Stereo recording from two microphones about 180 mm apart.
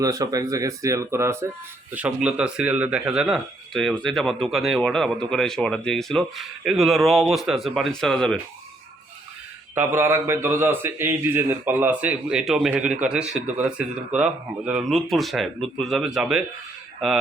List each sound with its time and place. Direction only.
0.0 s speech: 20° right (ahead or behind); by 8.4 s 5° left (ahead or behind)
9.7 s a man's voice: 15° right (ahead or behind)